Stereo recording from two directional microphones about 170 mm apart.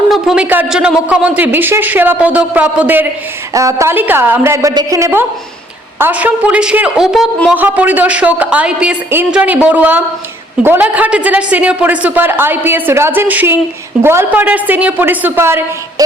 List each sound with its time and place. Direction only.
0.1 s a woman's voice: 5° right (ahead or behind)
7.5 s speech: 10° right (ahead or behind)